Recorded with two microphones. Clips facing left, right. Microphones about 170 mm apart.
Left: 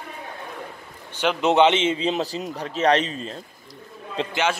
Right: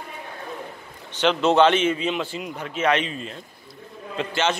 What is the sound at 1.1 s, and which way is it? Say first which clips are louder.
A man's voice: right 1 dB; 10° left (ahead or behind).